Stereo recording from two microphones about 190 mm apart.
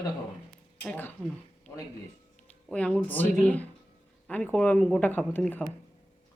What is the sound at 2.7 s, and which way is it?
Speech, 5° left (ahead or behind).